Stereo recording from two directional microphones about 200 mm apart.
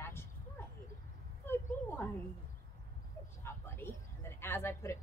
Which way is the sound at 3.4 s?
10° left (ahead or behind).